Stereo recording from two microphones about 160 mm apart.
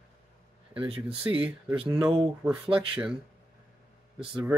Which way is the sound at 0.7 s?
35° right (ahead or behind).